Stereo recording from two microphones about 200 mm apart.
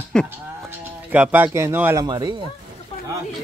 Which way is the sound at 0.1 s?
5° left (ahead or behind).